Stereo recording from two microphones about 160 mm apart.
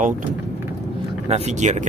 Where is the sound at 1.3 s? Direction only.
45° right (ahead or behind).